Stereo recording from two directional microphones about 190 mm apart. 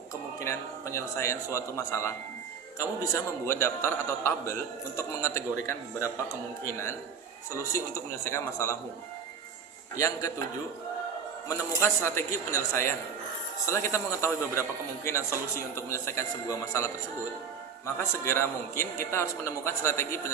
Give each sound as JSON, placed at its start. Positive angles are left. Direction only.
{"t": 0.3, "sound": "a man's voice", "side_deg": 15}
{"t": 7.5, "sound": "a man's voice", "side_deg": 15}
{"t": 9.9, "sound": "a man's voice", "side_deg": 15}
{"t": 11.4, "sound": "a man's voice", "side_deg": 15}
{"t": 18.0, "sound": "a man's voice", "side_deg": 15}